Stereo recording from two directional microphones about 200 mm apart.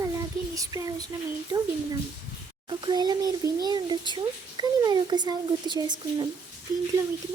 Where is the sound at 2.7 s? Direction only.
20° right (ahead or behind).